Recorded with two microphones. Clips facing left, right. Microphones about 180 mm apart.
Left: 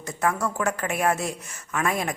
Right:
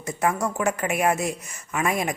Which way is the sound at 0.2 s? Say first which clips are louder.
Right 1 dB; 20° right (ahead or behind).